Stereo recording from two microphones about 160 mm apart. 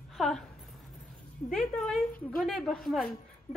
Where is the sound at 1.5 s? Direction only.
5° left (ahead or behind).